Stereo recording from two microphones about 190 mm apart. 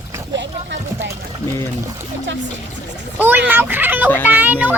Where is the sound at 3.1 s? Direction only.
10° right (ahead or behind).